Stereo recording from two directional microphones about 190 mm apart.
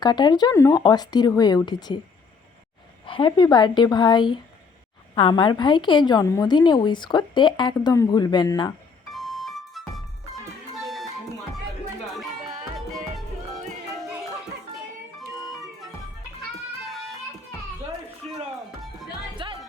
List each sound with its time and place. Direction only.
0.0 s a woman's voice: 20° left (ahead or behind)
3.1 s a woman's voice: 25° left (ahead or behind)
9.1 s music: centre (ahead or behind)
12.2 s music: centre (ahead or behind)
15.2 s music: centre (ahead or behind)
18.2 s music: 30° right (ahead or behind)
19.4 s music: 25° right (ahead or behind)